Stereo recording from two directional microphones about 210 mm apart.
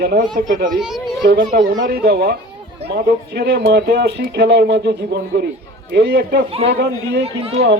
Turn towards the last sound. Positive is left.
turn(degrees=-30)  # may be behind; listen again after turning